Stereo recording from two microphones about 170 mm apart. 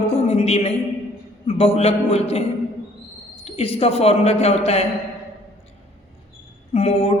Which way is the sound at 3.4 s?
35° left (ahead or behind).